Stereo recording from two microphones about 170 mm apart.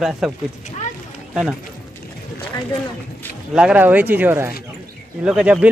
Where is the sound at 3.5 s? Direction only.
5° right (ahead or behind).